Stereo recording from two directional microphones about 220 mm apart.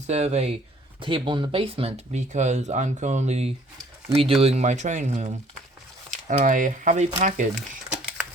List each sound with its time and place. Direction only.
0.1 s speech: 30° right (ahead or behind)